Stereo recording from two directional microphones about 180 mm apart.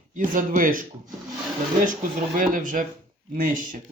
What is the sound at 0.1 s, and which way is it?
Speech, 45° right (ahead or behind).